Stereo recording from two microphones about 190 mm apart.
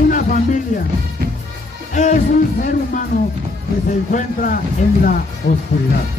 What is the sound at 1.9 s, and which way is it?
Music, 45° left (ahead or behind).